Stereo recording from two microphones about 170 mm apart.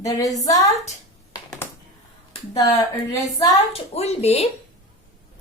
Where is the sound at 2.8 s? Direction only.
20° left (ahead or behind).